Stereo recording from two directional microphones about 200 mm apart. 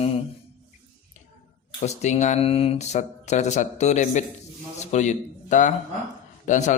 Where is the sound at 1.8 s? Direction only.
35° left (ahead or behind).